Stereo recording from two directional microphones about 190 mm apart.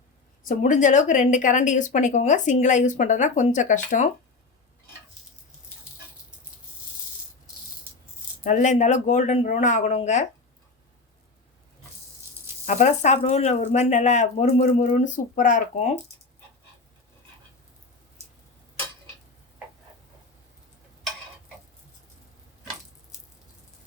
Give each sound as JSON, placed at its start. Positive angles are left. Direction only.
{"t": 0.4, "sound": "speech", "side_deg": 40}
{"t": 8.4, "sound": "speech", "side_deg": 40}
{"t": 12.6, "sound": "speech", "side_deg": 40}